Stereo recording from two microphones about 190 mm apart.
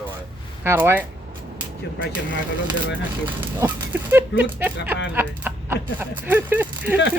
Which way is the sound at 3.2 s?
10° right (ahead or behind).